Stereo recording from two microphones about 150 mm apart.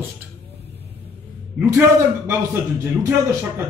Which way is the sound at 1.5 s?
10° right (ahead or behind).